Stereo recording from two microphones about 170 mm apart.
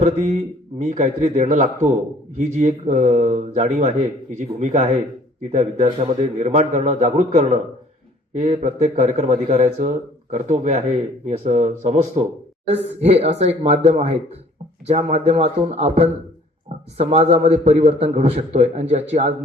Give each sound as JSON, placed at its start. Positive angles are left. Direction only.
{"t": 0.0, "sound": "a man's voice", "side_deg": -45}